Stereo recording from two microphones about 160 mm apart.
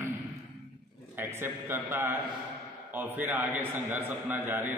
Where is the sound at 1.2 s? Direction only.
15° right (ahead or behind).